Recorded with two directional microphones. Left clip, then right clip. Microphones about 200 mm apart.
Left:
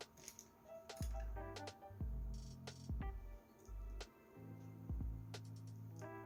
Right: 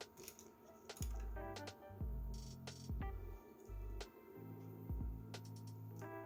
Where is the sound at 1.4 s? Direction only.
Centre (ahead or behind).